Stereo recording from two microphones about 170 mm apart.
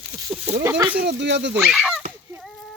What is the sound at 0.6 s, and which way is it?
Speech, 10° right (ahead or behind).